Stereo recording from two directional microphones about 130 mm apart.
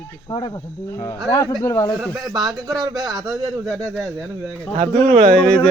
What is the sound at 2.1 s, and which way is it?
Speech, 30° right (ahead or behind).